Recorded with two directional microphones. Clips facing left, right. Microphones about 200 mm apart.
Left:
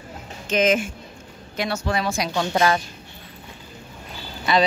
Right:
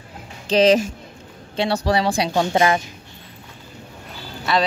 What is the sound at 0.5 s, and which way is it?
Speech, 35° right (ahead or behind).